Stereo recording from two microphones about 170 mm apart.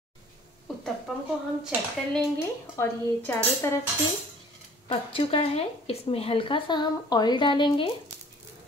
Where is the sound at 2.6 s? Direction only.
15° left (ahead or behind).